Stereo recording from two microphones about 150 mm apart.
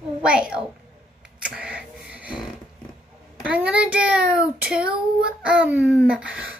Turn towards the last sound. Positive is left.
turn(degrees=-5)  # may be behind; listen again after turning